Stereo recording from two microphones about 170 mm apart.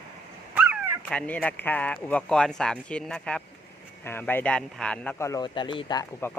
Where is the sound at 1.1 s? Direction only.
10° left (ahead or behind); by 6.0 s 25° left (ahead or behind).